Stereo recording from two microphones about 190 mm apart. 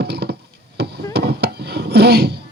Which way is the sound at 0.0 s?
60° right (ahead or behind).